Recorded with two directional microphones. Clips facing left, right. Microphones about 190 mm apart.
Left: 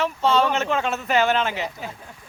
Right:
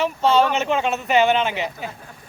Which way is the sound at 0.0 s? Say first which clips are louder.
Right 2 dB; 5° right (ahead or behind).